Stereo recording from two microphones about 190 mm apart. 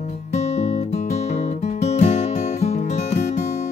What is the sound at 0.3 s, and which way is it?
Music, 35° left (ahead or behind).